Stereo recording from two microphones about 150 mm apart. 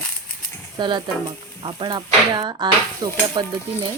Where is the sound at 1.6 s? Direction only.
35° right (ahead or behind).